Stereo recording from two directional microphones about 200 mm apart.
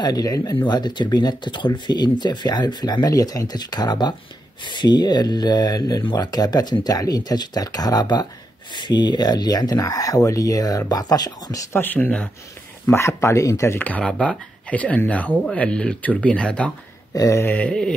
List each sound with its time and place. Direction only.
0.0 s speech: 20° left (ahead or behind)
17.1 s speech: 15° left (ahead or behind)